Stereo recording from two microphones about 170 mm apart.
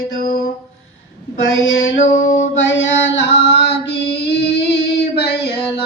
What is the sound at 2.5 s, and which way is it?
Mantra, 90° left.